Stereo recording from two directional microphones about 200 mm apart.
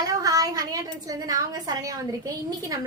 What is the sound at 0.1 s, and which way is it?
A woman's voice, 20° right (ahead or behind).